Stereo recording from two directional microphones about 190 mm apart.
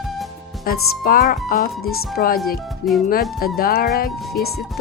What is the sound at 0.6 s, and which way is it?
Speech, 50° left (ahead or behind).